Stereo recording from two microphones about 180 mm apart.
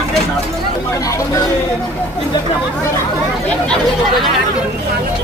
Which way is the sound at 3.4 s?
5° left (ahead or behind).